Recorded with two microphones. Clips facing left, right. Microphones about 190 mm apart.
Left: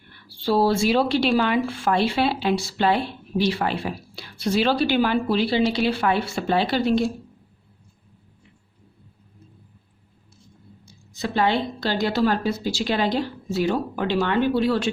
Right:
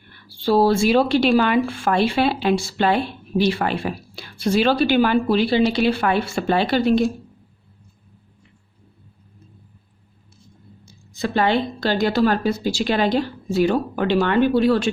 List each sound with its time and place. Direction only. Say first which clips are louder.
0.4 s a woman's voice: right 3 dB; 50° right (ahead or behind)
10.8 s a woman's voice: right 3 dB; 55° right (ahead or behind)